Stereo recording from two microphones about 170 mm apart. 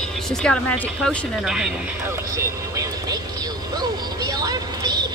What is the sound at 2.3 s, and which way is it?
Vehicle, 20° right (ahead or behind).